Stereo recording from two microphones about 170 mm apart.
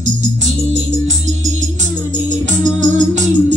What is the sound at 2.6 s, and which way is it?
Music, 45° right (ahead or behind).